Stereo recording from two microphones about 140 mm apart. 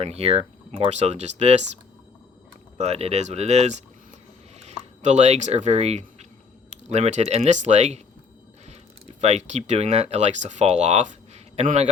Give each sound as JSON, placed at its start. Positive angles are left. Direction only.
{"t": 0.0, "sound": "speech", "side_deg": -45}
{"t": 2.7, "sound": "speech", "side_deg": -50}